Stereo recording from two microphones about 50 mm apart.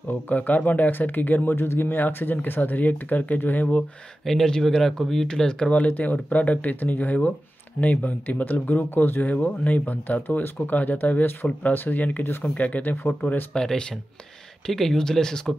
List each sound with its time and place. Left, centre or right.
0.1 s speech: left
4.2 s speech: centre; by 12.3 s left
12.3 s speech: left
12.5 s speech: left
13.5 s speech: centre